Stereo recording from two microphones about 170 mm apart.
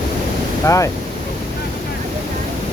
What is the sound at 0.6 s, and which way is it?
Speech, 20° left (ahead or behind).